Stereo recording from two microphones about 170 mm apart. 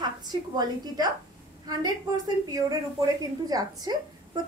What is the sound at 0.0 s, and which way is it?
A woman's voice, 25° right (ahead or behind).